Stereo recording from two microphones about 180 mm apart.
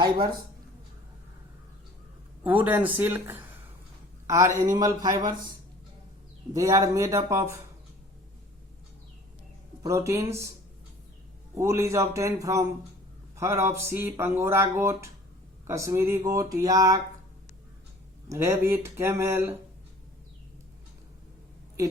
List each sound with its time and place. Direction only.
0.0 s speech: 25° right (ahead or behind)
2.4 s speech: 10° right (ahead or behind)
6.5 s speech: 15° right (ahead or behind)
9.8 s speech: 15° right (ahead or behind)
11.5 s speech: 15° right (ahead or behind)
18.3 s speech: 15° right (ahead or behind)